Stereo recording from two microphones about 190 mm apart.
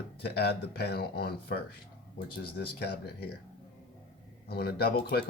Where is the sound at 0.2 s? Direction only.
60° left (ahead or behind).